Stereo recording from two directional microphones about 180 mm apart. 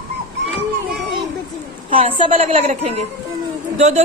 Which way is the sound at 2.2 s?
35° right (ahead or behind).